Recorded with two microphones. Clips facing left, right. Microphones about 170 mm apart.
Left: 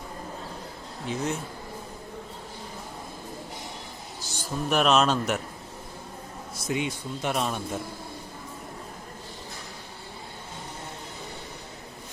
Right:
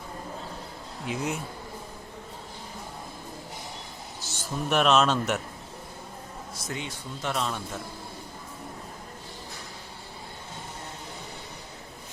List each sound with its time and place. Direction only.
1.0 s speech: 10° right (ahead or behind)
4.4 s speech: centre (ahead or behind)
6.7 s speech: 15° left (ahead or behind)